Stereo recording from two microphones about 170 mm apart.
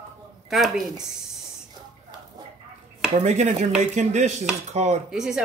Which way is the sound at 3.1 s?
40° right (ahead or behind).